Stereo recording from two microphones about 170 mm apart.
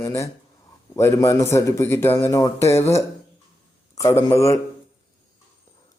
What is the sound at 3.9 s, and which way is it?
Speech, 15° left (ahead or behind).